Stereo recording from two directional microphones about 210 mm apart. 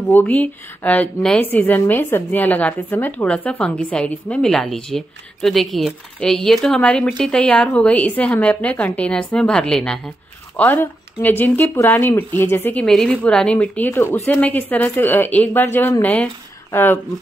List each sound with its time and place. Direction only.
0.1 s a woman's voice: 10° left (ahead or behind)